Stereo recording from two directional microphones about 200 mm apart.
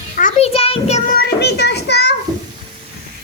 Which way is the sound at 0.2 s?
35° left (ahead or behind).